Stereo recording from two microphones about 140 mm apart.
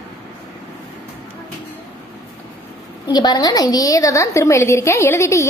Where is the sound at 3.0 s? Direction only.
30° left (ahead or behind).